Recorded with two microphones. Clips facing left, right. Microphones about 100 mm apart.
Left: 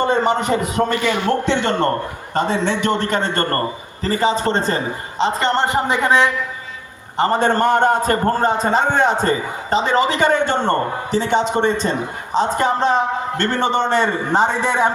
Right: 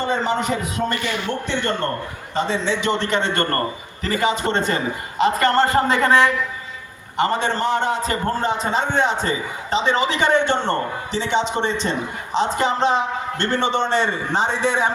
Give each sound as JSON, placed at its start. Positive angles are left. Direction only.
{"t": 0.0, "sound": "a man's voice", "side_deg": 60}
{"t": 2.3, "sound": "a man's voice", "side_deg": 50}
{"t": 7.2, "sound": "a man's voice", "side_deg": 40}